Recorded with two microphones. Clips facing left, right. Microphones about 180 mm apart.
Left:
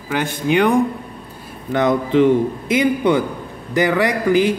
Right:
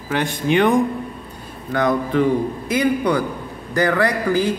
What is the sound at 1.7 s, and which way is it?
A man's voice, 20° left (ahead or behind).